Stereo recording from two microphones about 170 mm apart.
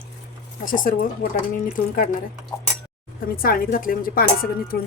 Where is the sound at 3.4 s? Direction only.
55° left (ahead or behind).